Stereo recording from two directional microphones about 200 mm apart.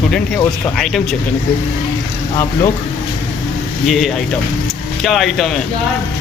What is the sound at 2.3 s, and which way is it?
Speech, 15° left (ahead or behind).